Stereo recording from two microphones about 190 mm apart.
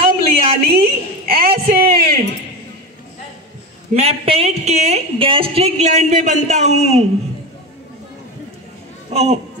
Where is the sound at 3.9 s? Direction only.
30° right (ahead or behind).